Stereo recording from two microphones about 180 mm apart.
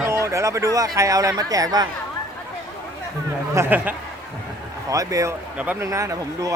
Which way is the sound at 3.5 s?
10° right (ahead or behind).